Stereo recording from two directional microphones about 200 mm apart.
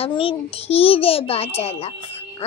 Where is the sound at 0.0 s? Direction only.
25° left (ahead or behind).